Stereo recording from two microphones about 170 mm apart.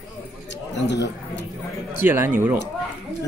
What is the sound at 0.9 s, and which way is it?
Speech, 90° left.